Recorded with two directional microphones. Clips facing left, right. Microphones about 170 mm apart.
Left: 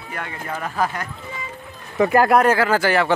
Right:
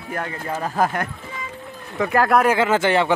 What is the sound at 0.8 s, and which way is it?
Speech, 55° right (ahead or behind).